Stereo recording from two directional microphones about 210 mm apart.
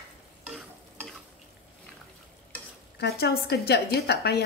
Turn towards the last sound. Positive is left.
turn(degrees=50)  # may be behind; listen again after turning